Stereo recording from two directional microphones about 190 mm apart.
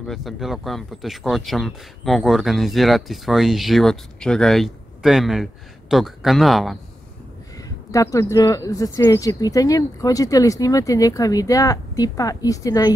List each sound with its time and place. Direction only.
0.0 s speech: centre (ahead or behind)
7.5 s speech: 15° left (ahead or behind)